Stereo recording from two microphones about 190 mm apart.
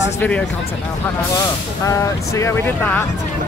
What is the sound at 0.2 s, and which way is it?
Speech, 10° left (ahead or behind).